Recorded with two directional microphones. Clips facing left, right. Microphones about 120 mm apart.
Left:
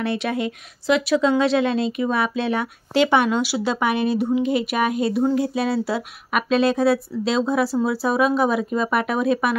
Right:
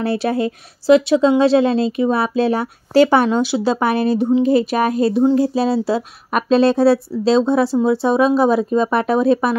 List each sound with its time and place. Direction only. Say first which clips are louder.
0.0 s speech: right 5 dB; 35° right (ahead or behind)